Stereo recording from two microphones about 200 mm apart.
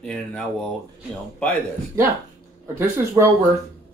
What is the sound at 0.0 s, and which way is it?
Speech, 5° left (ahead or behind).